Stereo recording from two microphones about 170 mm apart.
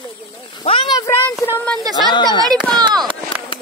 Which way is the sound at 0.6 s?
35° left (ahead or behind).